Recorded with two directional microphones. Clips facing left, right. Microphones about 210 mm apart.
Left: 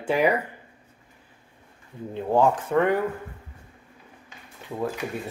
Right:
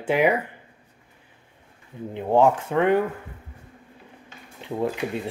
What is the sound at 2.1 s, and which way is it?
Speech, 20° right (ahead or behind).